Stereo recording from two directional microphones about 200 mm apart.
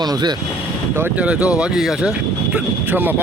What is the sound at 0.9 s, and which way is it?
Speech, 10° right (ahead or behind).